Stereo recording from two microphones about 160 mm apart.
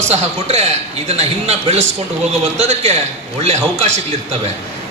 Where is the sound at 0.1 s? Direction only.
40° right (ahead or behind).